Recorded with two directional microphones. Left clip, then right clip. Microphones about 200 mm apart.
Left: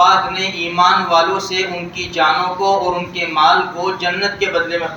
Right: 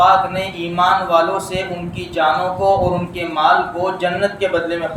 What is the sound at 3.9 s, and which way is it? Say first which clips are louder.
Speech: left 2 dB; 30° right (ahead or behind).